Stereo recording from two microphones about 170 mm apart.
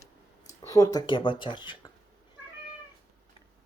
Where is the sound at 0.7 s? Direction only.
20° left (ahead or behind).